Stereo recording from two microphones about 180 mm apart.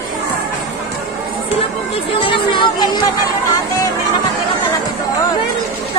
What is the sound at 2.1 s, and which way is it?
Speech, 30° left (ahead or behind).